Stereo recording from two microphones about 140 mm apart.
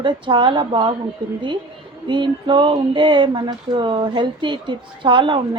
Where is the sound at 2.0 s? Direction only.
35° right (ahead or behind).